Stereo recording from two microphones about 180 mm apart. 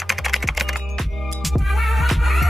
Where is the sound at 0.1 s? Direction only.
Centre (ahead or behind).